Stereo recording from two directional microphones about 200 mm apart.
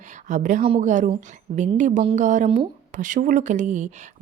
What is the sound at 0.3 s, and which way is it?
A woman's voice, 40° right (ahead or behind).